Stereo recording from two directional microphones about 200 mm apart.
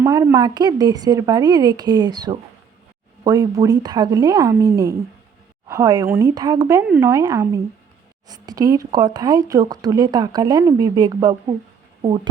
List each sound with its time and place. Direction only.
0.0 s speech: 15° right (ahead or behind)
6.8 s speech: 5° right (ahead or behind)
7.1 s speech: 15° right (ahead or behind)